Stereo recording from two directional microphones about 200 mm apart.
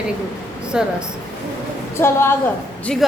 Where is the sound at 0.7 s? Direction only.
5° right (ahead or behind).